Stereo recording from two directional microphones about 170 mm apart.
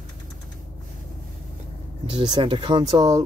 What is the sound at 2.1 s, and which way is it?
Speech, 30° right (ahead or behind).